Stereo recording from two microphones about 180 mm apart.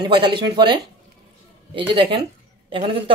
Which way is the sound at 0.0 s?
25° right (ahead or behind).